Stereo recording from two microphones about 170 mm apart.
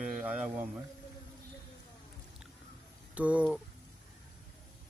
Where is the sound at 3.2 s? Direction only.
10° right (ahead or behind).